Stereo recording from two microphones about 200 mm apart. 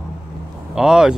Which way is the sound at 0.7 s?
5° right (ahead or behind).